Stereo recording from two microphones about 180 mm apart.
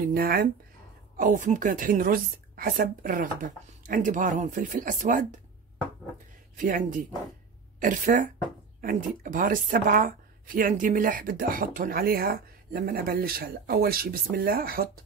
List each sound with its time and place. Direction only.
0.1 s speech: 55° right (ahead or behind)
6.5 s speech: 45° right (ahead or behind)